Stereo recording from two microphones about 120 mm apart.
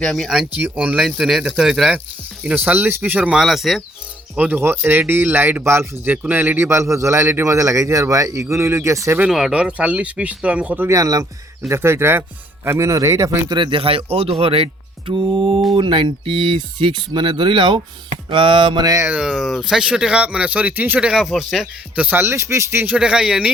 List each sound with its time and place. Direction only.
0.0 s speech: 5° left (ahead or behind)
2.6 s speech: 20° right (ahead or behind); by 3.8 s centre (ahead or behind)
4.4 s speech: 15° right (ahead or behind)
9.3 s speech: 5° right (ahead or behind)
10.8 s speech: 30° right (ahead or behind)
13.5 s speech: 45° right (ahead or behind)
18.9 s speech: 25° right (ahead or behind)
19.1 s speech: 5° right (ahead or behind)